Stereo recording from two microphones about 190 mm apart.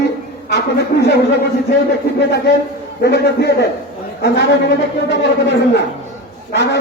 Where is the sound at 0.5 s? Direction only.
60° left (ahead or behind).